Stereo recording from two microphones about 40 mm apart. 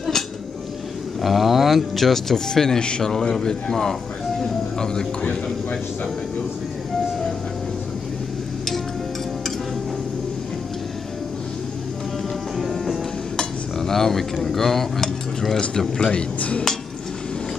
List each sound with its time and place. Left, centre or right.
1.2 s speech: centre
2.8 s speech: left
4.4 s a sound: centre
12.6 s music: centre
13.7 s speech: centre
16.1 s speech: left